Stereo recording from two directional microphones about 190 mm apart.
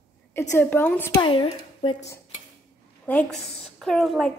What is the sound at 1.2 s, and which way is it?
Speech, 30° left (ahead or behind).